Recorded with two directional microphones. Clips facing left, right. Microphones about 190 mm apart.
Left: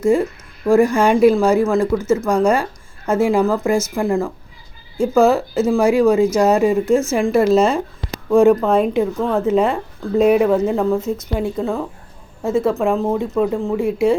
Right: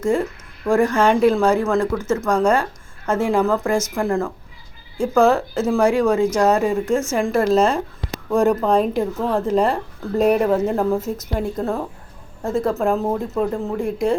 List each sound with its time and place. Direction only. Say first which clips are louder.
0.0 s a woman's voice: left 4 dB; 10° left (ahead or behind)